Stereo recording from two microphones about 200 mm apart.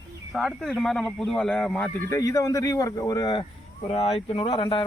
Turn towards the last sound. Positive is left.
turn(degrees=25)  # may be behind; listen again after turning